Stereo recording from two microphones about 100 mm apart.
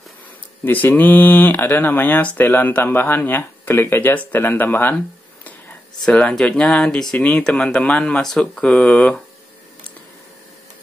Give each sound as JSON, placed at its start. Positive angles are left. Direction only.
{"t": 0.7, "sound": "speech", "side_deg": 20}